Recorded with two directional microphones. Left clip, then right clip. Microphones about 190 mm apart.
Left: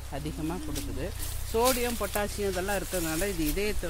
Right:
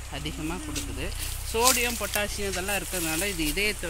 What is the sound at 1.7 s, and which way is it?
Speech, 35° left (ahead or behind).